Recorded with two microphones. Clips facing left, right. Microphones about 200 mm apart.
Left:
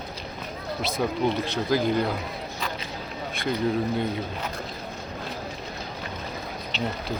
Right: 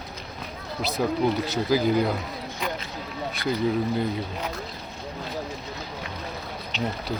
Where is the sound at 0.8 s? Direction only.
Centre (ahead or behind).